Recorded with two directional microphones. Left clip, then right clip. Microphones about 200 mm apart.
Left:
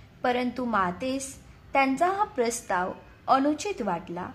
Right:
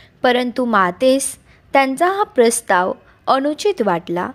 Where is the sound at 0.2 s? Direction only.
40° right (ahead or behind).